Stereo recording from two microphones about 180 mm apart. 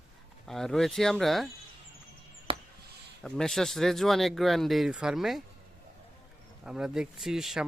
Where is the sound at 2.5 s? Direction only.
30° right (ahead or behind).